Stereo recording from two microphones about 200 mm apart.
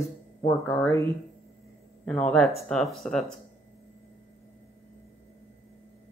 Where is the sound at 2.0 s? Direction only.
5° left (ahead or behind).